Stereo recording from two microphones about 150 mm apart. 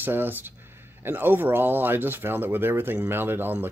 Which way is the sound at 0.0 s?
15° right (ahead or behind).